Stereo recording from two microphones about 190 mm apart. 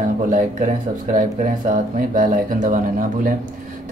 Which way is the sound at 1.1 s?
45° right (ahead or behind).